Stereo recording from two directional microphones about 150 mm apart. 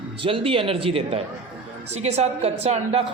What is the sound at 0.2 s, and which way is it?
A woman's voice, 35° right (ahead or behind).